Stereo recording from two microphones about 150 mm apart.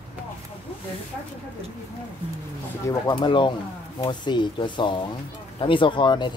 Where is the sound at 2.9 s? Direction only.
30° left (ahead or behind).